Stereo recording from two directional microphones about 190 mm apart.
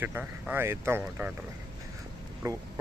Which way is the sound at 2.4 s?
15° right (ahead or behind).